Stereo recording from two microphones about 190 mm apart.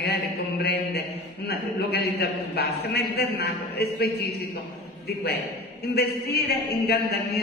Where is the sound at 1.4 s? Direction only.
55° left (ahead or behind).